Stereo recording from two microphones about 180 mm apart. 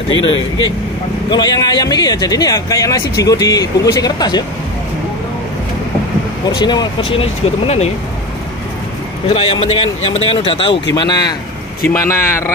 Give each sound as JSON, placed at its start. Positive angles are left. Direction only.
{"t": 1.3, "sound": "speech", "side_deg": 25}
{"t": 6.5, "sound": "speech", "side_deg": 25}
{"t": 9.3, "sound": "speech", "side_deg": 30}